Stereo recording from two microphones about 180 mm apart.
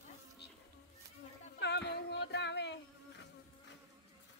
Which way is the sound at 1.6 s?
70° left (ahead or behind).